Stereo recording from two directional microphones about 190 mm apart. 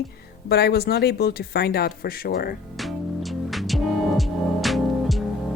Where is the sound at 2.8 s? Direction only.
Centre (ahead or behind).